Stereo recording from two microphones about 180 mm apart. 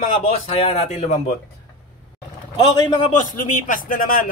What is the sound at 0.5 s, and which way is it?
Speech, 35° left (ahead or behind).